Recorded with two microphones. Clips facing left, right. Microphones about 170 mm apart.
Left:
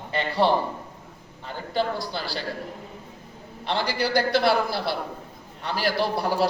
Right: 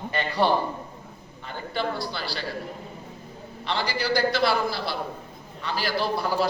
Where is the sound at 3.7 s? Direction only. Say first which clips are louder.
Left 2 dB; 55° left (ahead or behind).